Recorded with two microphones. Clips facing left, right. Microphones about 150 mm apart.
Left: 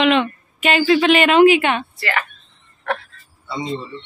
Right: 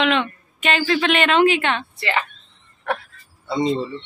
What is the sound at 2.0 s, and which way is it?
Speech, 20° right (ahead or behind).